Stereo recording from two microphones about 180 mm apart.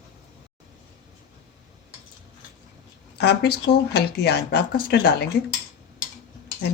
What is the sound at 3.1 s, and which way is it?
Speech, 65° left (ahead or behind).